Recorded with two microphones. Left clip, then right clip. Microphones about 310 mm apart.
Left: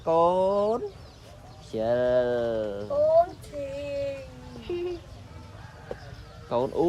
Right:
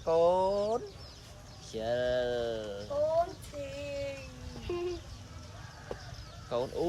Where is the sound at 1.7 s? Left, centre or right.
Centre.